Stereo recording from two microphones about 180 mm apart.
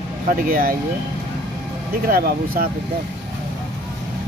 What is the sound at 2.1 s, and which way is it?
Speech, 55° right (ahead or behind).